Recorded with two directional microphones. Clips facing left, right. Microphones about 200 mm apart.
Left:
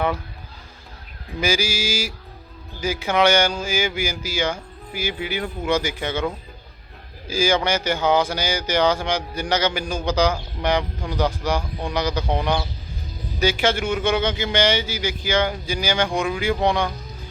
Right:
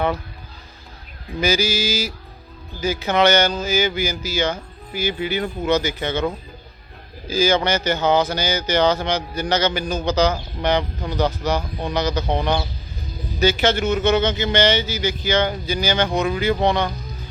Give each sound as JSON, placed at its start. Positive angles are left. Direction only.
{"t": 1.4, "sound": "speech", "side_deg": 10}
{"t": 7.3, "sound": "speech", "side_deg": 10}